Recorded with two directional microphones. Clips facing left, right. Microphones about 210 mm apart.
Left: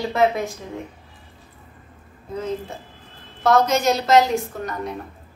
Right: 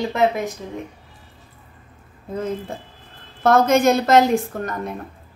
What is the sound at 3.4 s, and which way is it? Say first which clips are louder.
A woman's voice: right 3 dB; 50° right (ahead or behind).